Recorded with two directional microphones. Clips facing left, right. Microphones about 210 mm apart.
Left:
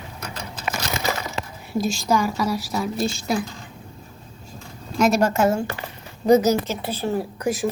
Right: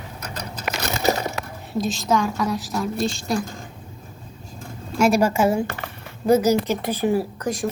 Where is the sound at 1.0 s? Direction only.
40° right (ahead or behind).